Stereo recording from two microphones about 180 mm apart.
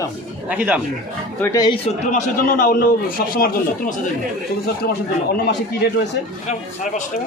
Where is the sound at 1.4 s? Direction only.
20° left (ahead or behind).